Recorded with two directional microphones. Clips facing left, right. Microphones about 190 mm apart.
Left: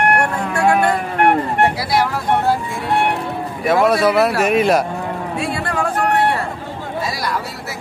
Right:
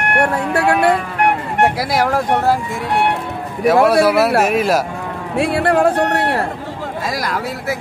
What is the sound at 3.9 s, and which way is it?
Speech, 5° right (ahead or behind).